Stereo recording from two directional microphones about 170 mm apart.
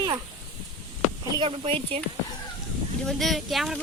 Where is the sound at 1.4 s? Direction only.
30° right (ahead or behind).